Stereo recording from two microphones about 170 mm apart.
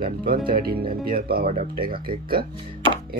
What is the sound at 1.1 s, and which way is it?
Speech, 65° right (ahead or behind).